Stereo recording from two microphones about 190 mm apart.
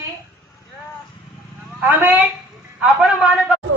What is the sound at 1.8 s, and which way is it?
A man's voice, 10° right (ahead or behind).